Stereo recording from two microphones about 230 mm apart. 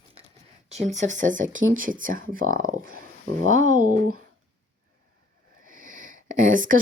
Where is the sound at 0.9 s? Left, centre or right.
Right.